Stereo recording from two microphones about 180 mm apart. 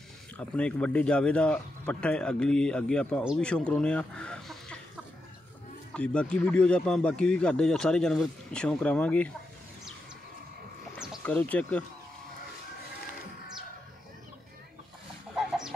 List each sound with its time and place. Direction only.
0.4 s speech: 5° left (ahead or behind)
5.9 s speech: 5° left (ahead or behind)
11.2 s speech: 10° left (ahead or behind)
15.3 s chicken: centre (ahead or behind)